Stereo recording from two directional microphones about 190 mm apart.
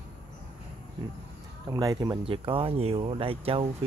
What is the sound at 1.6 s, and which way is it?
Speech, 20° right (ahead or behind).